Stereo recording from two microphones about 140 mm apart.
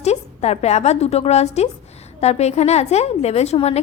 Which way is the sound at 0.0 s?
50° left (ahead or behind).